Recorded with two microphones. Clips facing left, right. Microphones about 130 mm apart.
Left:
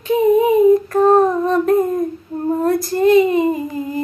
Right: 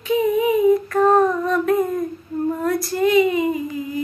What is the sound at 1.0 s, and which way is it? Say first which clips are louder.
Female singing: left 3 dB; 40° left (ahead or behind).